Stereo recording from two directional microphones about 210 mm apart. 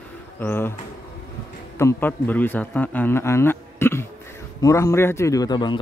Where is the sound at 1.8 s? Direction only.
10° left (ahead or behind).